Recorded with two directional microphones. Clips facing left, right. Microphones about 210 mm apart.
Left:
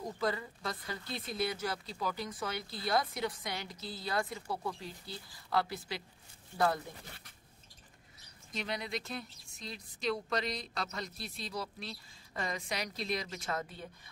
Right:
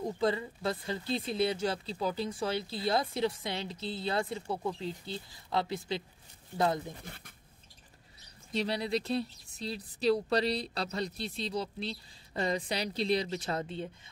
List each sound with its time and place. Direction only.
0.0 s speech: 25° right (ahead or behind)
8.5 s a woman's voice: 30° right (ahead or behind)